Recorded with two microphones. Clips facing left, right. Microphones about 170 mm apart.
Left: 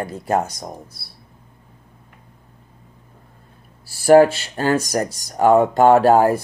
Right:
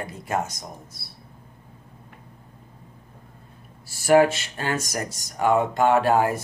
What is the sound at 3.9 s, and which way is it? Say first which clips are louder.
Speech: left 6 dB; 35° left (ahead or behind).